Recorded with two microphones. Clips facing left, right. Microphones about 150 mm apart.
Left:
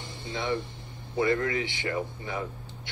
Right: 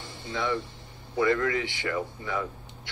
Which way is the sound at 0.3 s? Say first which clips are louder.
Right 1 dB; 20° left (ahead or behind).